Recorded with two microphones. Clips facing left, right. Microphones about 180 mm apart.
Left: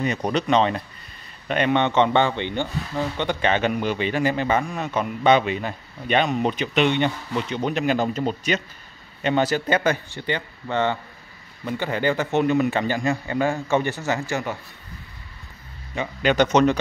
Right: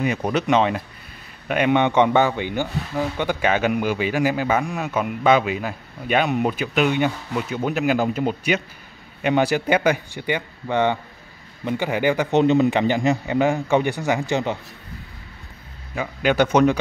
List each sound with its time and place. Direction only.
0.0 s a man's voice: 5° right (ahead or behind)
15.9 s a man's voice: 5° right (ahead or behind)